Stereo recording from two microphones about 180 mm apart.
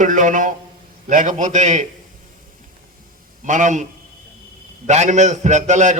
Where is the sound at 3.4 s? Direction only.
45° right (ahead or behind).